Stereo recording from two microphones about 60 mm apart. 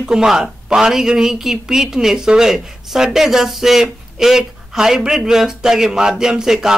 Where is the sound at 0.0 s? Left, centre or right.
Centre.